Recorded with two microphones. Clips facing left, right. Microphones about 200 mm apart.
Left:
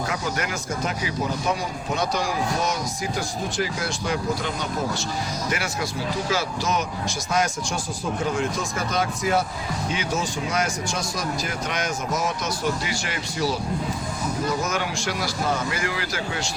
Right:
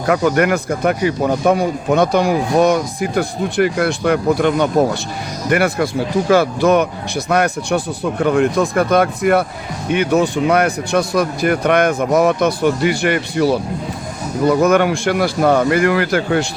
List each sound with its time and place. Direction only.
0.0 s speech: 65° right (ahead or behind)